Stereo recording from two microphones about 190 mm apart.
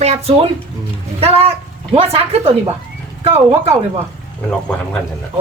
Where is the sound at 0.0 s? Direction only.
30° right (ahead or behind).